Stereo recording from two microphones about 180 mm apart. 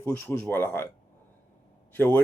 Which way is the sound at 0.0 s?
10° left (ahead or behind).